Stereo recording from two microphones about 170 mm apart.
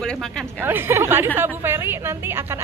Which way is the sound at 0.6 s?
15° right (ahead or behind).